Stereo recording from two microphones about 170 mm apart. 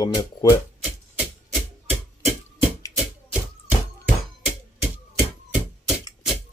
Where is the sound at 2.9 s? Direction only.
10° right (ahead or behind).